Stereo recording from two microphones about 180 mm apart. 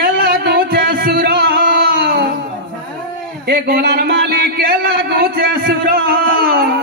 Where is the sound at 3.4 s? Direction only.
60° right (ahead or behind).